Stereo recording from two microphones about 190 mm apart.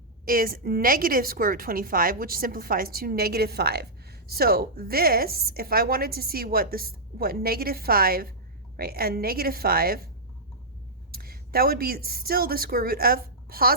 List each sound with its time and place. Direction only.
0.3 s a woman's voice: 50° right (ahead or behind)
11.1 s a woman's voice: 50° right (ahead or behind)